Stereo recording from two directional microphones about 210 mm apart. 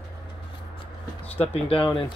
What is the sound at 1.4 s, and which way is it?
Speech, 30° left (ahead or behind).